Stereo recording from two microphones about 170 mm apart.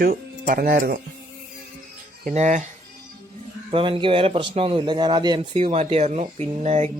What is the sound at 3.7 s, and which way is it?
Speech, 30° right (ahead or behind).